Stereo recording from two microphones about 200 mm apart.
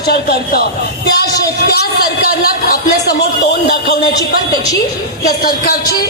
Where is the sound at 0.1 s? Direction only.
50° left (ahead or behind).